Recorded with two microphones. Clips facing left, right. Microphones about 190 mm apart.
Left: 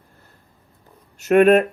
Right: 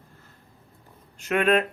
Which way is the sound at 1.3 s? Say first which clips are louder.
Left 9 dB; 45° left (ahead or behind).